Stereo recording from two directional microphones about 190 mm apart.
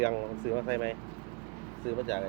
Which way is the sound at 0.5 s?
15° left (ahead or behind).